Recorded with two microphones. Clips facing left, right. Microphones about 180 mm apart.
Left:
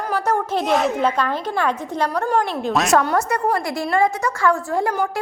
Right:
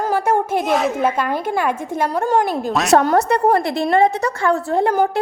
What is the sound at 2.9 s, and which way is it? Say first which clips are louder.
A woman's voice: right 7 dB; 35° right (ahead or behind).